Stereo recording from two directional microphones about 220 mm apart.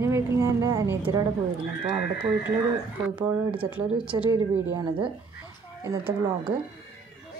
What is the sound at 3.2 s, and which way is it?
A woman's voice, 20° right (ahead or behind).